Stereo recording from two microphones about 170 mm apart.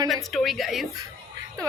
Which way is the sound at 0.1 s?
Centre (ahead or behind).